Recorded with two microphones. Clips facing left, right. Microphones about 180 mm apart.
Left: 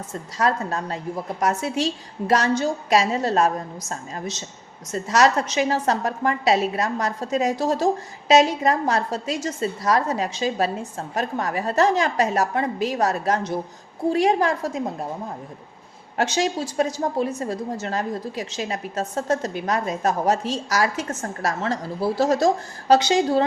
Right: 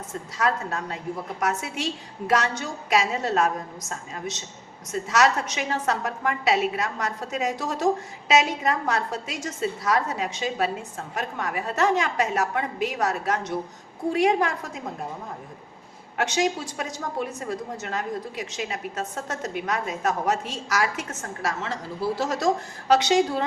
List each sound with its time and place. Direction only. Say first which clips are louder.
0.3 s a woman's voice: left 3 dB; 35° left (ahead or behind)
16.1 s a woman's voice: left 2 dB; 35° left (ahead or behind)